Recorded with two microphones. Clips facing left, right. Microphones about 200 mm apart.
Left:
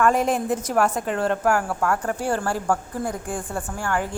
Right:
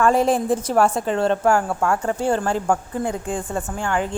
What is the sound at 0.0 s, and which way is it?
A man's voice, 30° right (ahead or behind).